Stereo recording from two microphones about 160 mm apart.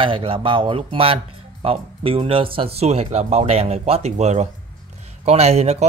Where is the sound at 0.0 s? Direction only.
35° right (ahead or behind).